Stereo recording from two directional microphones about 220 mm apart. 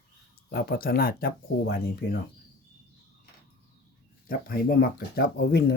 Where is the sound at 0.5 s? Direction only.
45° left (ahead or behind).